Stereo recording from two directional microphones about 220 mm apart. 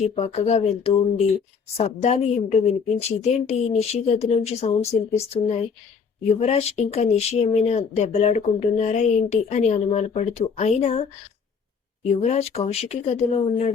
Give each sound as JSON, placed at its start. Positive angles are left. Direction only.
{"t": 0.0, "sound": "speech", "side_deg": 30}
{"t": 12.0, "sound": "speech", "side_deg": 30}